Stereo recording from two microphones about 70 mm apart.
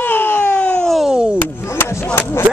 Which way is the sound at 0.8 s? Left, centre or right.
Centre.